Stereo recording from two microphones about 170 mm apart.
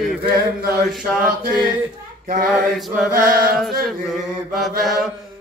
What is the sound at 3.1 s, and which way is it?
Chant, 60° right (ahead or behind).